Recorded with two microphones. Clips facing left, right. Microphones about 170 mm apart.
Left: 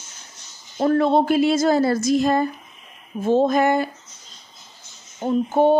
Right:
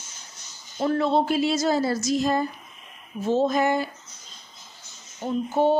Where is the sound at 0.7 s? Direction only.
50° left (ahead or behind).